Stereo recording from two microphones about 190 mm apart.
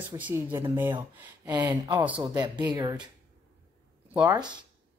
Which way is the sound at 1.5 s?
20° right (ahead or behind).